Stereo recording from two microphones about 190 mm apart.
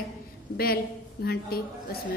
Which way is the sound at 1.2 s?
55° left (ahead or behind).